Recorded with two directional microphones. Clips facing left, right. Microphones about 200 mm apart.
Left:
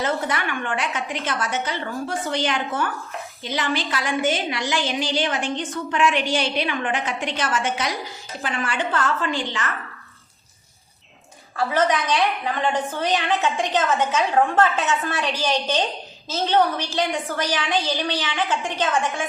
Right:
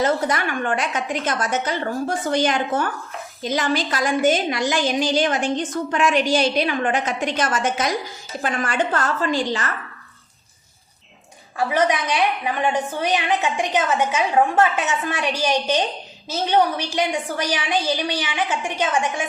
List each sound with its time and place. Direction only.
0.0 s a woman's voice: 40° right (ahead or behind)
11.5 s a woman's voice: 15° right (ahead or behind)